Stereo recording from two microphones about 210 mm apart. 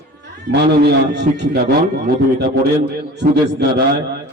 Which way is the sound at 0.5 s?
50° right (ahead or behind).